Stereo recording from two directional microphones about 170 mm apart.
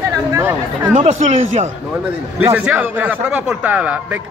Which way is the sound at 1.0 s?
35° right (ahead or behind).